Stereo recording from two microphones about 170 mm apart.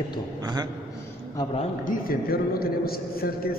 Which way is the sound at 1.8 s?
60° left (ahead or behind).